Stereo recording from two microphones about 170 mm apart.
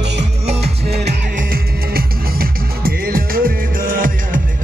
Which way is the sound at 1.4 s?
60° right (ahead or behind).